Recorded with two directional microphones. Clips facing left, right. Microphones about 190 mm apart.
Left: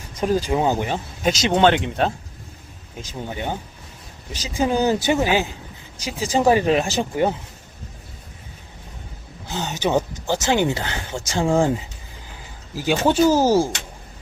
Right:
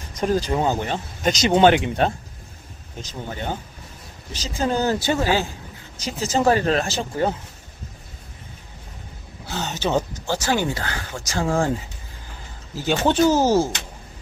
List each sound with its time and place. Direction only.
0.2 s speech: 10° left (ahead or behind)
3.0 s speech: 10° left (ahead or behind)
9.5 s speech: 15° left (ahead or behind)
12.7 s speech: 10° left (ahead or behind)